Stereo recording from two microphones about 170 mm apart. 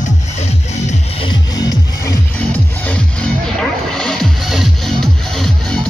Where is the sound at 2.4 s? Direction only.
10° left (ahead or behind).